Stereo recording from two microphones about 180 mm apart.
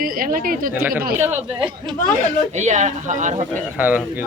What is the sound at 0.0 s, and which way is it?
Speech, 50° right (ahead or behind).